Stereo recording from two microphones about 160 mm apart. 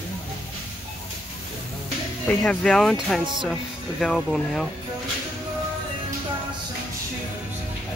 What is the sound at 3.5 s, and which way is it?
Speech, centre (ahead or behind).